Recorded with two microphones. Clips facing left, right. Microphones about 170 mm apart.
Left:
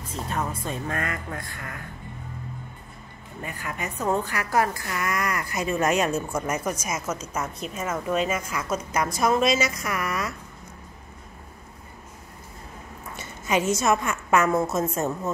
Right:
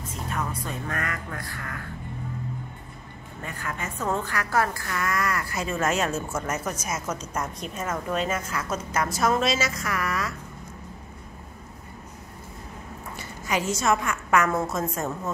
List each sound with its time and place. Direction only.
0.3 s music: 30° left (ahead or behind)
0.7 s speech: 25° left (ahead or behind)
3.4 s a woman's voice: 15° left (ahead or behind)
13.1 s a woman's voice: 20° left (ahead or behind)